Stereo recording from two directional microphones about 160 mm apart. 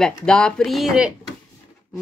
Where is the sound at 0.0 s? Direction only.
5° left (ahead or behind).